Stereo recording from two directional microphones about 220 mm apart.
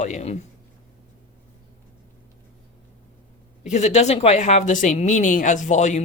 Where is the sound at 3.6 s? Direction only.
30° left (ahead or behind).